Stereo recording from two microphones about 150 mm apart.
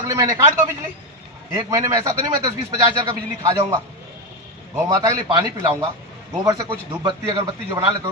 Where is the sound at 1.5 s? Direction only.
20° right (ahead or behind).